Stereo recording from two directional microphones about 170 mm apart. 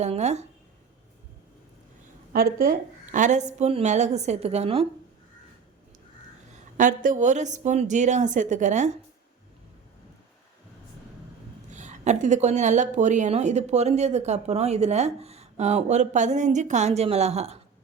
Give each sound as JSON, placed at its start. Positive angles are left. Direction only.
{"t": 0.0, "sound": "speech", "side_deg": -40}
{"t": 2.3, "sound": "a woman's voice", "side_deg": -60}
{"t": 6.7, "sound": "a woman's voice", "side_deg": -50}
{"t": 11.7, "sound": "speech", "side_deg": -45}